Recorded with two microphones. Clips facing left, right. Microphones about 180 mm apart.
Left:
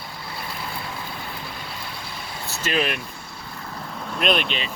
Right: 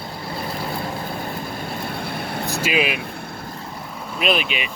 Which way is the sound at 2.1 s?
60° right (ahead or behind).